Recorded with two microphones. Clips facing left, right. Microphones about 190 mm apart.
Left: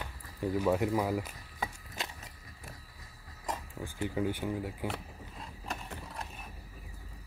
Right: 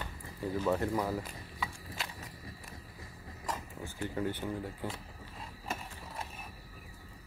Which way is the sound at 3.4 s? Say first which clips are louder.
Left 1 dB; 15° left (ahead or behind).